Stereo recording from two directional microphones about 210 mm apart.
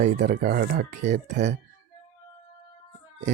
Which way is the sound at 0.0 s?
40° right (ahead or behind).